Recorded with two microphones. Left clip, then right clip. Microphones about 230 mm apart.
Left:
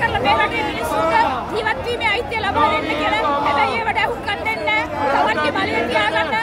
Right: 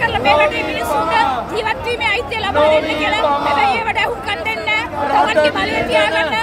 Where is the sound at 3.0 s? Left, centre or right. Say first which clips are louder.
Right 2 dB; centre.